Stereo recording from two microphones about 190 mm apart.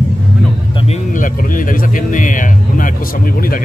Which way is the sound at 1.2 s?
45° left (ahead or behind).